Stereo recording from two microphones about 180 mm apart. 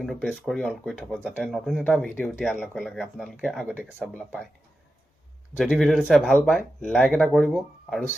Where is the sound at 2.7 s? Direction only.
Centre (ahead or behind).